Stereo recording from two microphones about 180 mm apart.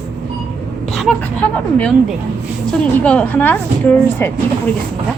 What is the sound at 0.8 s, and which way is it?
A woman's voice, centre (ahead or behind).